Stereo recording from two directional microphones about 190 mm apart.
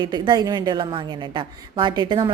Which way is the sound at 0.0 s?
20° right (ahead or behind).